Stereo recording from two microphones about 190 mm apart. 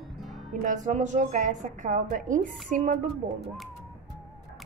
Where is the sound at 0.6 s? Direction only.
40° right (ahead or behind).